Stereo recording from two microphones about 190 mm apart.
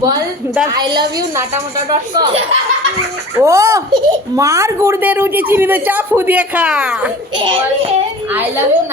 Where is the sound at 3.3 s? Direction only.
15° right (ahead or behind).